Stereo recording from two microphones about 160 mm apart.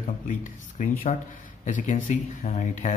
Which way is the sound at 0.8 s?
50° left (ahead or behind).